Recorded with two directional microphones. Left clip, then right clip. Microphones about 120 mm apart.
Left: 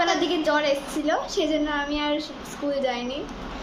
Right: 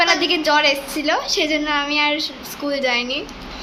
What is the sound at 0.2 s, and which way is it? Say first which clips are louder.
A woman's voice: right 6 dB; 15° right (ahead or behind).